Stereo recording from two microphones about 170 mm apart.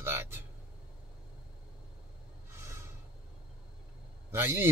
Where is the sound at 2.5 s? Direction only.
15° right (ahead or behind).